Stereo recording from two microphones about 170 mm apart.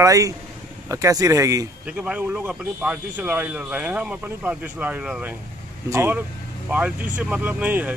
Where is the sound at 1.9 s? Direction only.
10° right (ahead or behind).